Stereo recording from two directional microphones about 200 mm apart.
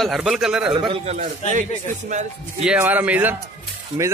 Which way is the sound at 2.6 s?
5° right (ahead or behind).